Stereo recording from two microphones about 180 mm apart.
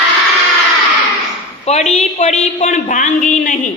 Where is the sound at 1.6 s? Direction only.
40° left (ahead or behind).